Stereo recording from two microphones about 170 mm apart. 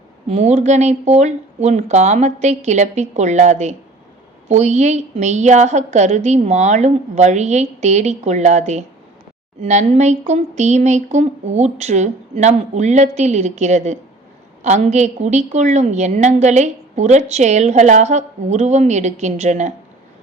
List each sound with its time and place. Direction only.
0.3 s a woman's voice: 40° right (ahead or behind)